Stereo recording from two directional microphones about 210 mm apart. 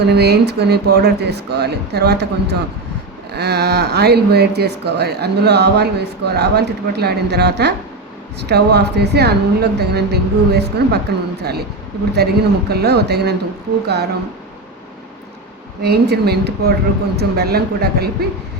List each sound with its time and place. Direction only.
0.0 s speech: 50° right (ahead or behind)
15.8 s speech: 50° right (ahead or behind)